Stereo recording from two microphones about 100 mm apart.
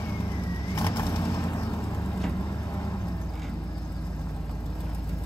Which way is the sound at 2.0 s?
5° left (ahead or behind).